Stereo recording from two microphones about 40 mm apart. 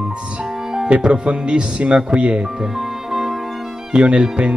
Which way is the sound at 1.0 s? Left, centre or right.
Right.